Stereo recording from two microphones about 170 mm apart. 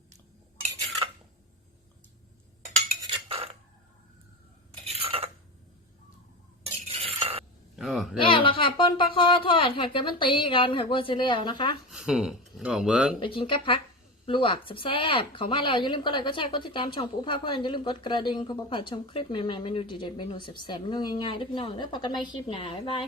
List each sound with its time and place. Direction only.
3.2 s cutlery: 35° right (ahead or behind)
5.0 s cutlery: 35° right (ahead or behind)
6.7 s stir: 35° right (ahead or behind)
7.8 s a sound: centre (ahead or behind)
8.2 s speech: 30° left (ahead or behind)
11.9 s speech: 5° right (ahead or behind)
13.2 s speech: 30° left (ahead or behind)